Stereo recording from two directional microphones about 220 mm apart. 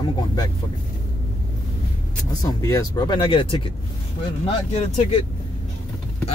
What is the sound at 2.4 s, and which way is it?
Speech, 15° left (ahead or behind).